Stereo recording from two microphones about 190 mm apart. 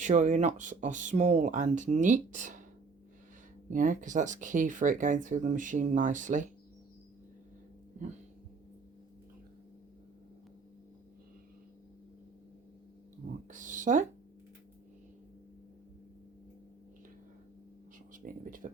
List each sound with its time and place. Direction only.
0.0 s speech: 40° right (ahead or behind)
3.7 s speech: 45° right (ahead or behind)
13.5 s speech: 40° right (ahead or behind)
18.1 s a sound: 45° right (ahead or behind)